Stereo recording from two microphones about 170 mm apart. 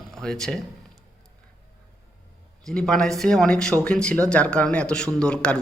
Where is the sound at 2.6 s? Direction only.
5° left (ahead or behind).